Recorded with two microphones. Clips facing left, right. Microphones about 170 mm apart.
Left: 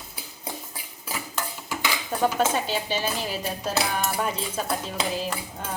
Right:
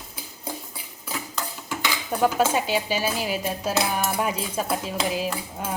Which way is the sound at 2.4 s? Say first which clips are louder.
Right 2 dB; 10° right (ahead or behind).